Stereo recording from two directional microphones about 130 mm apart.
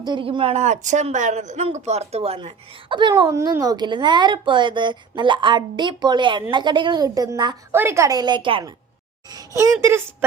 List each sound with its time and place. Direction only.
0.0 s speech: 40° right (ahead or behind)
2.9 s speech: 35° right (ahead or behind)
7.7 s speech: 20° right (ahead or behind); by 8.6 s 40° right (ahead or behind)
9.3 s speech: 25° right (ahead or behind)